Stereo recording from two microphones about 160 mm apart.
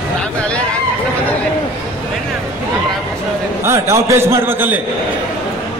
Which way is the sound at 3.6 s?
20° right (ahead or behind).